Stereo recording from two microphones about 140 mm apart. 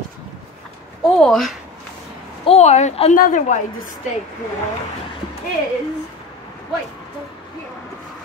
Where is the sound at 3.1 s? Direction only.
70° left (ahead or behind).